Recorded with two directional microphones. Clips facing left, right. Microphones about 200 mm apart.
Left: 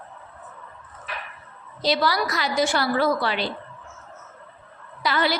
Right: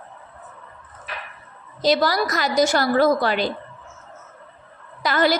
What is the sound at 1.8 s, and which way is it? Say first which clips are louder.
A woman's voice: right 4 dB; 45° right (ahead or behind).